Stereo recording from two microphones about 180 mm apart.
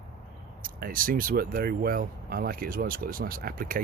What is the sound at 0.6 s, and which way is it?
Speech, 50° right (ahead or behind).